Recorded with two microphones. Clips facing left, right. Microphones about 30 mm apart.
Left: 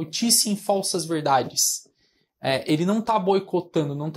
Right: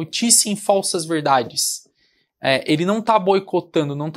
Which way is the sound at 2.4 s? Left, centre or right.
Right.